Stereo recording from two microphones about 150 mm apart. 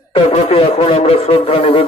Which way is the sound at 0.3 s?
40° left (ahead or behind).